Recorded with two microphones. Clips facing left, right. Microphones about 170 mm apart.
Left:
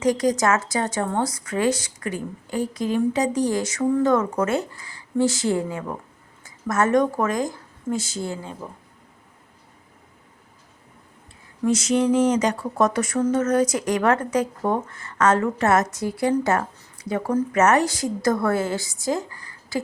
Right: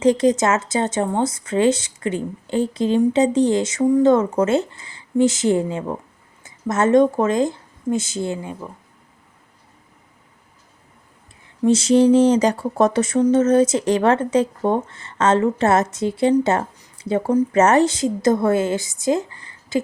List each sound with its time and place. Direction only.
0.0 s a woman's voice: 25° right (ahead or behind)
11.6 s a woman's voice: 30° right (ahead or behind)